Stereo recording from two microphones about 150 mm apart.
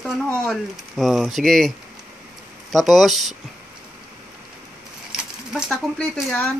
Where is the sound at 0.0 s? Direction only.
5° left (ahead or behind).